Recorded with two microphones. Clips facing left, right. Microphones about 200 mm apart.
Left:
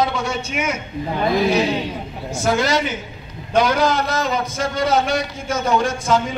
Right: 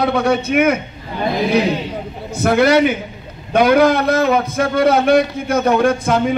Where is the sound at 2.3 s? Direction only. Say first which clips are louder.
Right 7 dB; 60° right (ahead or behind).